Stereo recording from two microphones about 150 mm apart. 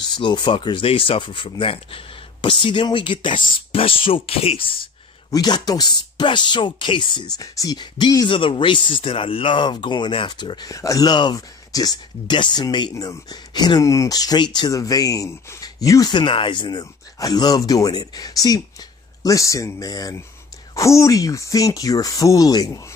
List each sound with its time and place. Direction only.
0.0 s speech: 30° left (ahead or behind)
5.3 s speech: 25° left (ahead or behind)